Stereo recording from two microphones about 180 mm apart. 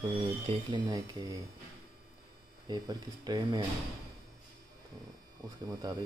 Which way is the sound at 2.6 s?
25° right (ahead or behind).